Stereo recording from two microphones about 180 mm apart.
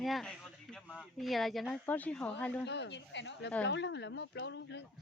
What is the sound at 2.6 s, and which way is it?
Speech, 70° left (ahead or behind).